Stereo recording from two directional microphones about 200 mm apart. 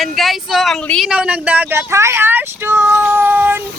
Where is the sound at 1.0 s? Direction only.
5° right (ahead or behind).